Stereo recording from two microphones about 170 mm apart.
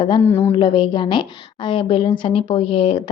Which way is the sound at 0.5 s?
30° left (ahead or behind).